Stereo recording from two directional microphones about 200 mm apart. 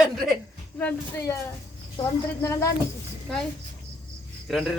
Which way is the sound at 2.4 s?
15° left (ahead or behind).